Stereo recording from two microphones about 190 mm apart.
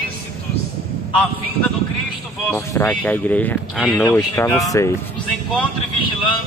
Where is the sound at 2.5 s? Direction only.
15° left (ahead or behind).